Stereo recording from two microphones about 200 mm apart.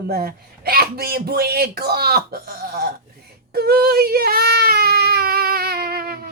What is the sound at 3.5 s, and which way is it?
Baby cry, 50° right (ahead or behind).